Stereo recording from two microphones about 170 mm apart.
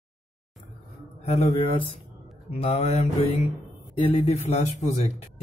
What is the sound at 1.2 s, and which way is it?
Speech, 40° left (ahead or behind).